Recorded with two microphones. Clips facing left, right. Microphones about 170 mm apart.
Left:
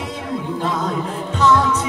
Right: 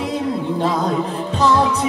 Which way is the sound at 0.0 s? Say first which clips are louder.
Right 5 dB; 35° right (ahead or behind).